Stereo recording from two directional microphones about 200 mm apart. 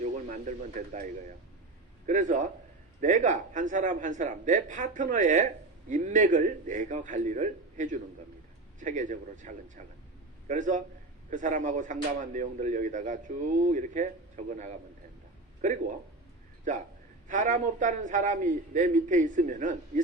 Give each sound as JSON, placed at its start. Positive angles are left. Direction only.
{"t": 0.0, "sound": "speech", "side_deg": -40}
{"t": 15.6, "sound": "speech", "side_deg": -40}
{"t": 17.2, "sound": "speech", "side_deg": -40}